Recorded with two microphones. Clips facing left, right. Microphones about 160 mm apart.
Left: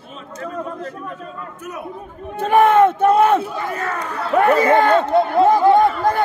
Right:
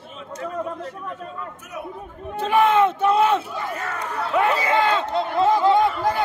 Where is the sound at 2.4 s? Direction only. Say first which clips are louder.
Left 5 dB; 50° left (ahead or behind).